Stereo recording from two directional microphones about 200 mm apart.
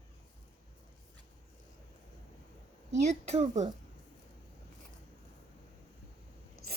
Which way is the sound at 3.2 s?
35° right (ahead or behind).